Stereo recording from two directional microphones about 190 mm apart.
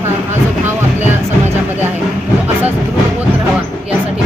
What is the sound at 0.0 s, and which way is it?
Music, 10° right (ahead or behind).